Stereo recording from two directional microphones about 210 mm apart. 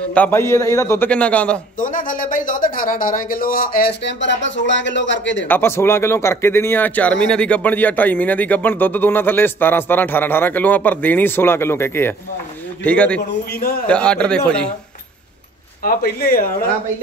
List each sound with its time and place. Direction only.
0.1 s speech: 10° left (ahead or behind)
1.8 s speech: 40° left (ahead or behind); by 5.5 s 60° left (ahead or behind)
5.5 s a man's voice: 10° left (ahead or behind)
13.5 s speech: 45° left (ahead or behind)
13.8 s a man's voice: 5° left (ahead or behind)
15.8 s speech: 45° left (ahead or behind)